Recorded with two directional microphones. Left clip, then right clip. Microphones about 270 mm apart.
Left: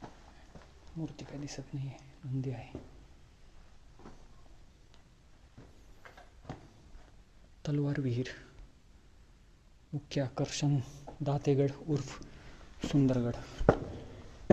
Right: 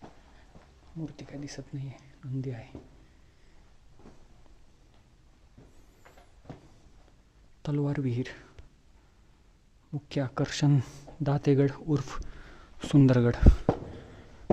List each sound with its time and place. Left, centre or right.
1.0 s speech: centre
7.6 s speech: centre
9.9 s speech: centre; by 13.5 s right